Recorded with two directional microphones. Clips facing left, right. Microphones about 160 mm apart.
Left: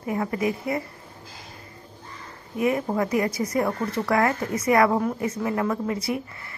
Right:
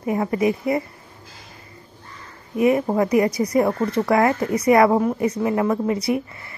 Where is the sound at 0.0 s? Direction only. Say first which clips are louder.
Right 5 dB; 20° right (ahead or behind).